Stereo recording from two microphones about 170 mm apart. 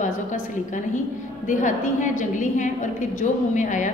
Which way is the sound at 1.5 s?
50° left (ahead or behind).